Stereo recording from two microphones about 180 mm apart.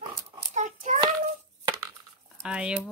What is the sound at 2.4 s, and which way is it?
Speech, 5° right (ahead or behind).